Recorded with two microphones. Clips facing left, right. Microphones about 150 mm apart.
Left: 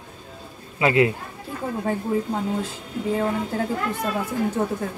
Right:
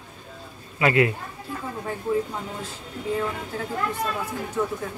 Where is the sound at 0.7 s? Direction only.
25° left (ahead or behind).